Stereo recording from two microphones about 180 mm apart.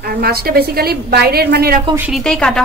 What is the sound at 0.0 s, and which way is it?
A woman's voice, 55° right (ahead or behind).